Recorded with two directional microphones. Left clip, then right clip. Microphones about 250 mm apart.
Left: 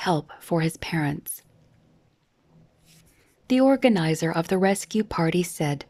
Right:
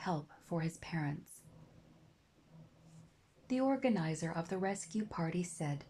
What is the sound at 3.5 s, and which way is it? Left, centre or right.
Speech, left.